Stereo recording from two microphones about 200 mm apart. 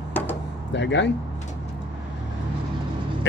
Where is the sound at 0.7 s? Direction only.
65° left (ahead or behind).